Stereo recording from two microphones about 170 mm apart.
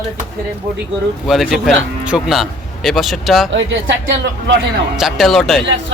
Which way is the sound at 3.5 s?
90° right.